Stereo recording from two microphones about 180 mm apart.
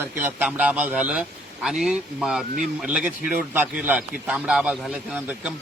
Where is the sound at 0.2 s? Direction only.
10° right (ahead or behind).